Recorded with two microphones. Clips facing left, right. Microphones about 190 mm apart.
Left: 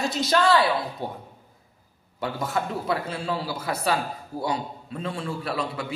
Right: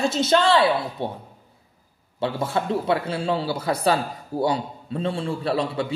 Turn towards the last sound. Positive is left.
turn(degrees=-30)  # may be behind; listen again after turning